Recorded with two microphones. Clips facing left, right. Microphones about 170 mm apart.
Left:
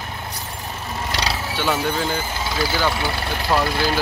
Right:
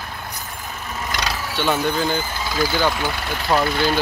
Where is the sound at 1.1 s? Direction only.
30° left (ahead or behind).